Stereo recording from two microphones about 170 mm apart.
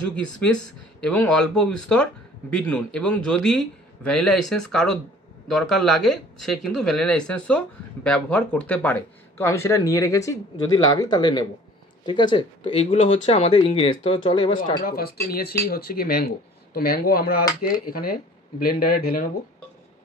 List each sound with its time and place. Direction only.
0.1 s a man's voice: 5° left (ahead or behind); by 13.0 s 30° left (ahead or behind)
13.0 s speech: 40° left (ahead or behind)
14.8 s speech: 65° left (ahead or behind)